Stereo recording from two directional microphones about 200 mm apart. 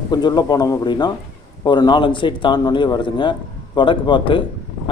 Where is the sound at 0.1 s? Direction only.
20° left (ahead or behind).